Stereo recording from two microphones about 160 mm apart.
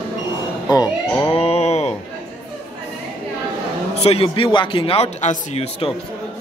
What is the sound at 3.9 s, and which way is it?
A man's voice, 40° left (ahead or behind).